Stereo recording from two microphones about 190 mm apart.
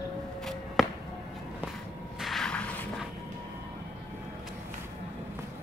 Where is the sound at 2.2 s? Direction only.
Centre (ahead or behind).